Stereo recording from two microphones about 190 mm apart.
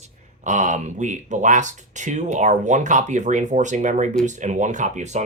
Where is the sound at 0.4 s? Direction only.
40° right (ahead or behind).